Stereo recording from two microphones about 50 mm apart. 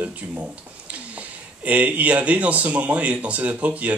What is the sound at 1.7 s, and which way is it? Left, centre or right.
Speech, right.